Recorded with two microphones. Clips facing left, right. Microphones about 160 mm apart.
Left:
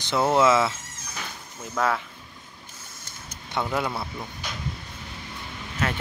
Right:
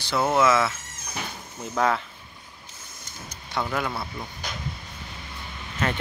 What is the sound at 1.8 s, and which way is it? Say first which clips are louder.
Speech: right 2 dB; centre (ahead or behind).